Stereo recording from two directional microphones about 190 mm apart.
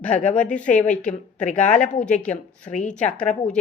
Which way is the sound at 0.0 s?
5° left (ahead or behind).